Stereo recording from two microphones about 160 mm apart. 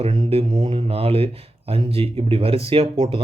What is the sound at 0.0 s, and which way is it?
Speech, 40° right (ahead or behind).